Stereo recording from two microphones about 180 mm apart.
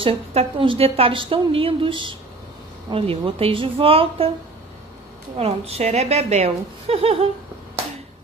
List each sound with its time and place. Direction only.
0.0 s a woman's voice: 30° right (ahead or behind)
5.4 s a woman's voice: 35° right (ahead or behind)